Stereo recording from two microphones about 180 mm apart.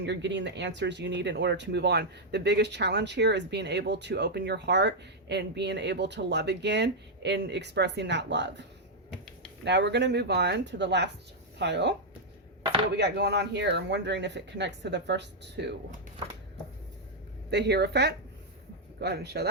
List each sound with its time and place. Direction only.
0.0 s speech: 75° right (ahead or behind)
9.0 s a sound: 5° left (ahead or behind)
9.6 s speech: 75° right (ahead or behind)
13.0 s speech: 70° right (ahead or behind)
17.5 s speech: 70° right (ahead or behind)